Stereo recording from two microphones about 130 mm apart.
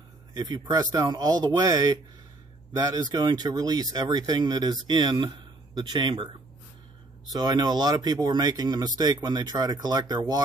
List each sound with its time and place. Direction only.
0.3 s speech: 30° right (ahead or behind)
7.3 s speech: 30° right (ahead or behind)